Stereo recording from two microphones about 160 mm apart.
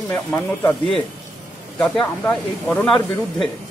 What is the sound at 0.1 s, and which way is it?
Speech, 10° left (ahead or behind).